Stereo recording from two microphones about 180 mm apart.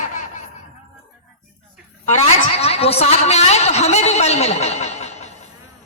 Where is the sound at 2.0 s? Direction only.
35° left (ahead or behind).